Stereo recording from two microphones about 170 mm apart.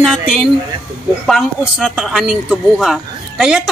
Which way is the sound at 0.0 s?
5° right (ahead or behind).